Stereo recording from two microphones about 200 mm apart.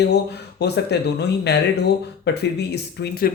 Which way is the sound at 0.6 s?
55° left (ahead or behind).